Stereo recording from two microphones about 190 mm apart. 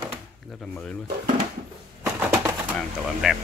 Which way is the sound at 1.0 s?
45° right (ahead or behind).